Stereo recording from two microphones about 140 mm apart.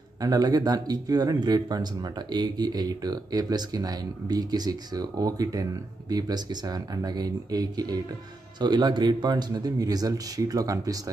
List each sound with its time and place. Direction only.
0.2 s speech: 25° right (ahead or behind)